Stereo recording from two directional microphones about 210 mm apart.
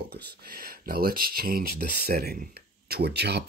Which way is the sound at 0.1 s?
50° right (ahead or behind).